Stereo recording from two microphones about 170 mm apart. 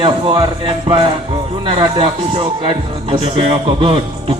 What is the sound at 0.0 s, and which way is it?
A man's voice, 30° right (ahead or behind).